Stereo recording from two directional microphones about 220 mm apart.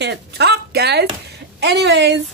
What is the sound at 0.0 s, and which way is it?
A woman's voice, 50° right (ahead or behind).